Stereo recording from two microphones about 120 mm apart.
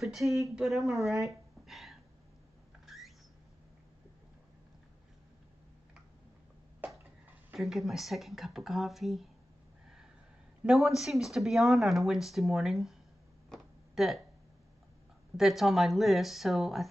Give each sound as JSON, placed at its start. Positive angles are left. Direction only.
{"t": 0.0, "sound": "speech", "side_deg": 0}
{"t": 1.2, "sound": "a sound", "side_deg": 0}
{"t": 7.5, "sound": "speech", "side_deg": 0}
{"t": 10.6, "sound": "speech", "side_deg": -5}
{"t": 13.5, "sound": "a sound", "side_deg": 0}
{"t": 15.3, "sound": "speech", "side_deg": 0}